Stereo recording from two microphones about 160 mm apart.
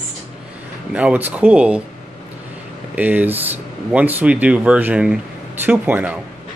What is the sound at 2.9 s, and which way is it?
Speech, 10° right (ahead or behind).